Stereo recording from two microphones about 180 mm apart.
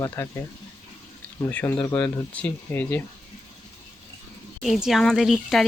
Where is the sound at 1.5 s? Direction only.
10° left (ahead or behind).